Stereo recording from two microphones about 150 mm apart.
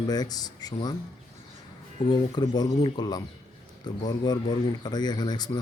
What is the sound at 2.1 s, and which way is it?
Speech, 30° left (ahead or behind).